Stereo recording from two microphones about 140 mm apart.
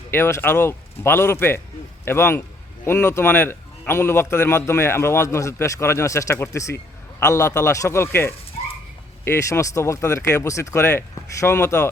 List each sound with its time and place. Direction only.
0.1 s a man's voice: 15° left (ahead or behind)